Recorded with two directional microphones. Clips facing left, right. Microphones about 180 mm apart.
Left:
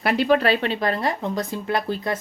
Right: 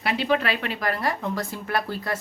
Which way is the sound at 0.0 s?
45° left (ahead or behind).